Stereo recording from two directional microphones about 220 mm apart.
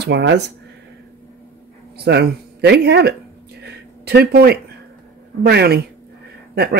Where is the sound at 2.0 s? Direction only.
50° right (ahead or behind).